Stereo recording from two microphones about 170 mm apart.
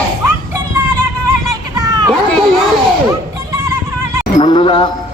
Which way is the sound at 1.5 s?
20° right (ahead or behind).